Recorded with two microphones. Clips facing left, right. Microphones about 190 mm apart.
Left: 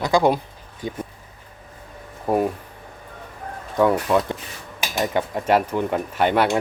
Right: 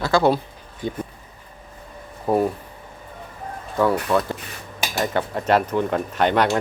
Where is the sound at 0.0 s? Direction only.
15° left (ahead or behind).